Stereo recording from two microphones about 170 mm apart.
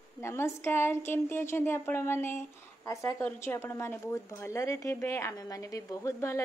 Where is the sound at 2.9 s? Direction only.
20° left (ahead or behind).